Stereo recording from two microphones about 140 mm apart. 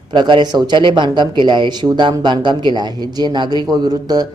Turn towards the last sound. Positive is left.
turn(degrees=-30)  # may be behind; listen again after turning